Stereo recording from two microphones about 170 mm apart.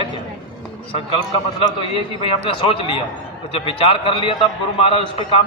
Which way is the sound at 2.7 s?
30° left (ahead or behind).